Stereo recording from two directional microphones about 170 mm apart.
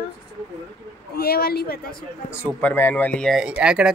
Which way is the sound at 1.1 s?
65° left (ahead or behind).